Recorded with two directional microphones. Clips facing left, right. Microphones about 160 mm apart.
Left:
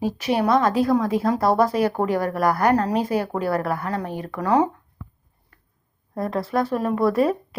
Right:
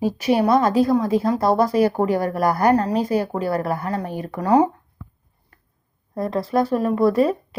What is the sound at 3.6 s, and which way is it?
Speech, 35° right (ahead or behind).